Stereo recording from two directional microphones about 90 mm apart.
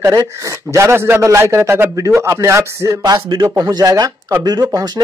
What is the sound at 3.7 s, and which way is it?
Speech, 45° right (ahead or behind).